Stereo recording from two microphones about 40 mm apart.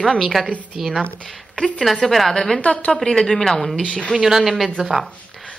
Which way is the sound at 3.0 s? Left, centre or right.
Centre.